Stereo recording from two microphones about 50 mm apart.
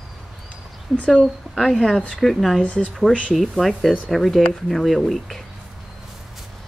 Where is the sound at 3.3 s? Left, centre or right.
Centre.